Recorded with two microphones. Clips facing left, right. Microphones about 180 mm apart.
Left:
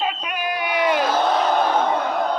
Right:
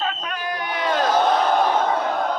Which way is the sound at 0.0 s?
15° left (ahead or behind).